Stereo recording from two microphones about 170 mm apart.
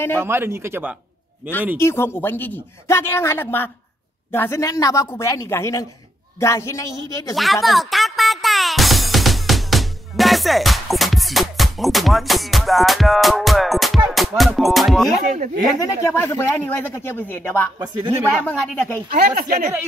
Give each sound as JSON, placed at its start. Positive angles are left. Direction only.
{"t": 0.2, "sound": "speech", "side_deg": -15}
{"t": 1.8, "sound": "a woman's voice", "side_deg": 15}
{"t": 7.6, "sound": "music", "side_deg": 0}
{"t": 15.2, "sound": "speech", "side_deg": -50}
{"t": 15.8, "sound": "speech", "side_deg": 15}
{"t": 17.7, "sound": "speech", "side_deg": -25}
{"t": 18.5, "sound": "speech", "side_deg": 10}
{"t": 19.0, "sound": "speech", "side_deg": -60}